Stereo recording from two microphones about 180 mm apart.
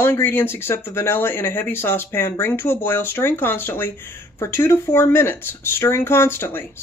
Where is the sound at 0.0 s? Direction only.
10° left (ahead or behind).